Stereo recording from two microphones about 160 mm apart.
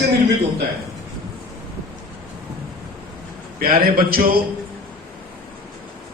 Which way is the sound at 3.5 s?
65° right (ahead or behind).